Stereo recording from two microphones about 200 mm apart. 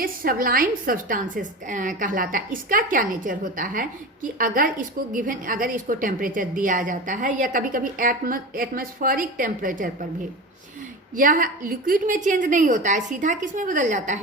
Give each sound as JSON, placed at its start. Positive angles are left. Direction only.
{"t": 0.0, "sound": "a woman's voice", "side_deg": -45}
{"t": 11.1, "sound": "a woman's voice", "side_deg": -40}